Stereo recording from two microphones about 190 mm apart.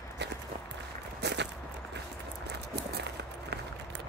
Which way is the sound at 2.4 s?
60° right (ahead or behind).